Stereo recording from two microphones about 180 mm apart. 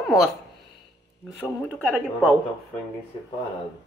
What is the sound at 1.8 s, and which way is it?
Speech, 10° right (ahead or behind).